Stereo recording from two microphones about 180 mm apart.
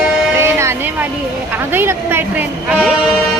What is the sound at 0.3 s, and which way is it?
Music, 15° right (ahead or behind).